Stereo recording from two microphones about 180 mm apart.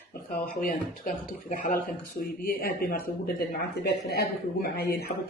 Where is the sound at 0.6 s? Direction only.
50° left (ahead or behind).